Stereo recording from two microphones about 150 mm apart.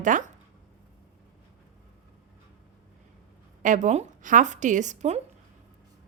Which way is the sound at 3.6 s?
55° right (ahead or behind).